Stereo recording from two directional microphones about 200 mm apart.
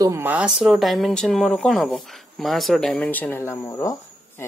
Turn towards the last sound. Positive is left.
turn(degrees=10)  # may be behind; listen again after turning